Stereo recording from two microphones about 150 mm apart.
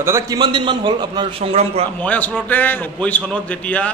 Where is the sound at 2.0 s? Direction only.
10° left (ahead or behind).